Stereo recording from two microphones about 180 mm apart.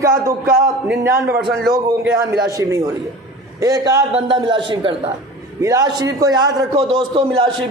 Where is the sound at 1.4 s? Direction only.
Centre (ahead or behind).